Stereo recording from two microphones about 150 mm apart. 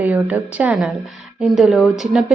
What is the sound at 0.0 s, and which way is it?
A woman's voice, 10° right (ahead or behind).